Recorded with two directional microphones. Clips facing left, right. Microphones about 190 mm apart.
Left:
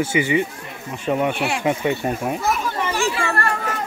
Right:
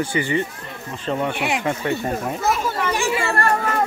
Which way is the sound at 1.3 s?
15° right (ahead or behind).